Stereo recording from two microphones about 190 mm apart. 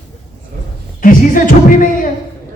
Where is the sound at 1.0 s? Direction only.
45° left (ahead or behind).